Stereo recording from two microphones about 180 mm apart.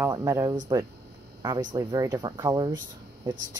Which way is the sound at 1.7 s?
20° right (ahead or behind).